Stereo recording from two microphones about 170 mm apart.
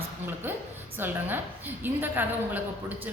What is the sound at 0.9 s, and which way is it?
A woman's voice, 10° right (ahead or behind).